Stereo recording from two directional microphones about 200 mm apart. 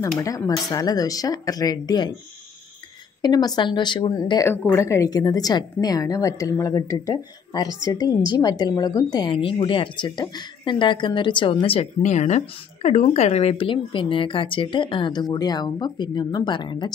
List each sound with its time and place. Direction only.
0.2 s a woman's voice: 15° left (ahead or behind)
3.2 s a woman's voice: 20° left (ahead or behind)